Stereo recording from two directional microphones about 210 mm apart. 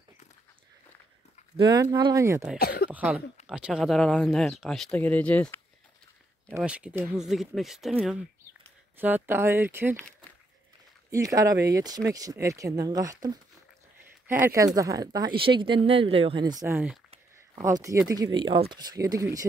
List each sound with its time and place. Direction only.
1.6 s speech: 20° right (ahead or behind)
2.6 s cough: 45° left (ahead or behind)
2.9 s speech: 5° right (ahead or behind)
6.5 s speech: 5° right (ahead or behind)
8.9 s speech: 10° right (ahead or behind)
11.1 s speech: 15° right (ahead or behind)
17.1 s speech: 20° right (ahead or behind)